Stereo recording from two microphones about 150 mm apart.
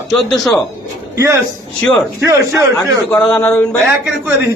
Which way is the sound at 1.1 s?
20° right (ahead or behind).